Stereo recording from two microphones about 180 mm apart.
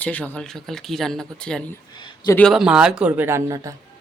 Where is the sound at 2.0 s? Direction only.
20° left (ahead or behind).